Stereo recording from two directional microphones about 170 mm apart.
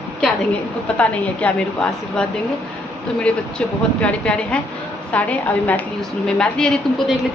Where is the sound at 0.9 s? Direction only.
10° left (ahead or behind).